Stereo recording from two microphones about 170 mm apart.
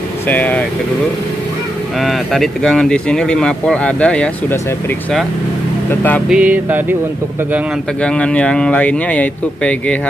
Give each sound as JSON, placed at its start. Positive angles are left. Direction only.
{"t": 0.3, "sound": "speech", "side_deg": 10}
{"t": 2.0, "sound": "speech", "side_deg": 0}
{"t": 5.9, "sound": "speech", "side_deg": 10}
{"t": 6.2, "sound": "music", "side_deg": -5}
{"t": 8.0, "sound": "speech", "side_deg": 5}